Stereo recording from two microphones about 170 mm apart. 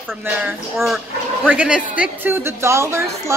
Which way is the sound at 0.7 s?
Centre (ahead or behind).